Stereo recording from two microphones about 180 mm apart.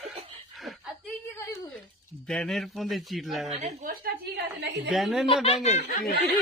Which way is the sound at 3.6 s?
45° right (ahead or behind).